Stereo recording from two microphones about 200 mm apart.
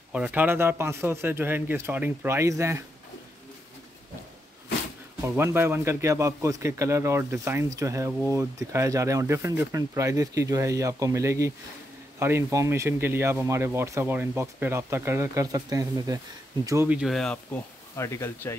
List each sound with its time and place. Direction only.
0.1 s speech: 5° right (ahead or behind)
5.4 s speech: 10° right (ahead or behind); by 18.5 s 15° left (ahead or behind)